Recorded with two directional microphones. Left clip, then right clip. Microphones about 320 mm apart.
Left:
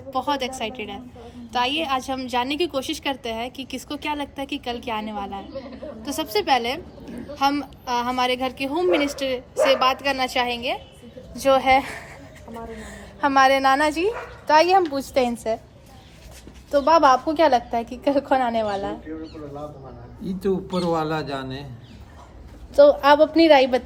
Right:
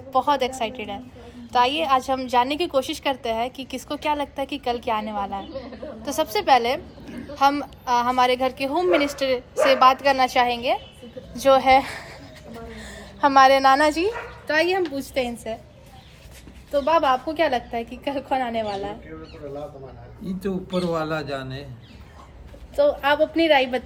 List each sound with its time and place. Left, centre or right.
0.1 s a child's voice: centre
8.9 s a woman's voice: centre
9.1 s a child's voice: centre
16.7 s a woman's voice: left
20.2 s a child's voice: centre
22.7 s a woman's voice: left